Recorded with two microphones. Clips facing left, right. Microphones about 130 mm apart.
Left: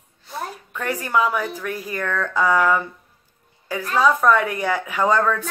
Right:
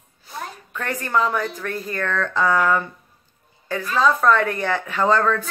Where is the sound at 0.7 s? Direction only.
10° left (ahead or behind).